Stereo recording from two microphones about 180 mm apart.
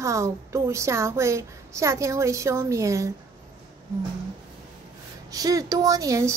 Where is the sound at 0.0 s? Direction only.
15° right (ahead or behind).